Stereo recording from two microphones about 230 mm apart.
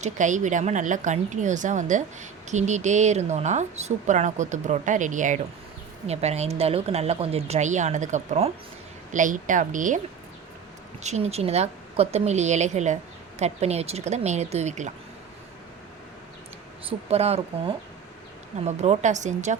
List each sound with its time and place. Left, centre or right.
0.0 s a woman's voice: right
11.0 s a woman's voice: right
17.1 s a woman's voice: right